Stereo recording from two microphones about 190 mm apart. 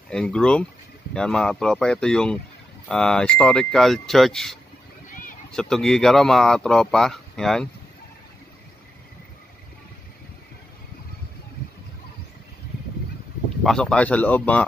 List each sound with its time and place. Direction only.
0.1 s speech: 5° left (ahead or behind)
5.1 s a sound: 45° left (ahead or behind)
5.5 s speech: 5° left (ahead or behind)
13.7 s a man's voice: 5° left (ahead or behind)